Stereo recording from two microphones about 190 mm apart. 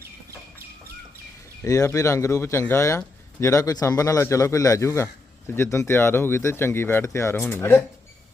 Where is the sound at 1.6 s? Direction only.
15° left (ahead or behind).